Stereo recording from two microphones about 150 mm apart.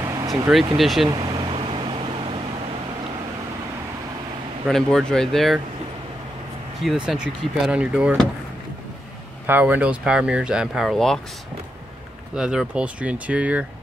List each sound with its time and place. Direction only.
0.0 s vehicle: 25° right (ahead or behind)
0.7 s speech: centre (ahead or behind)
1.0 s air conditioning: 30° right (ahead or behind)
4.6 s speech: 5° left (ahead or behind)
6.8 s speech: centre (ahead or behind)
9.5 s speech: 10° right (ahead or behind)
12.4 s speech: 5° right (ahead or behind)